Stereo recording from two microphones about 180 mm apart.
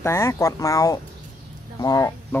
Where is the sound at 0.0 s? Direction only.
15° left (ahead or behind).